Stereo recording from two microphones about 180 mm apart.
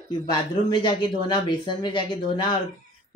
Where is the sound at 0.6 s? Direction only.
25° left (ahead or behind).